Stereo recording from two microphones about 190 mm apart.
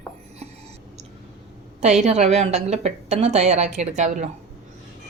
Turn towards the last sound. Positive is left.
turn(degrees=-35)  # may be behind; listen again after turning